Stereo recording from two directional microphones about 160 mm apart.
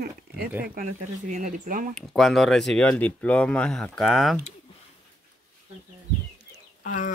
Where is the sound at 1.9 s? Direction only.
Centre (ahead or behind).